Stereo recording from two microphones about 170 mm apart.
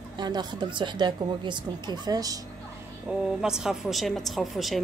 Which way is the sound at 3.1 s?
5° right (ahead or behind).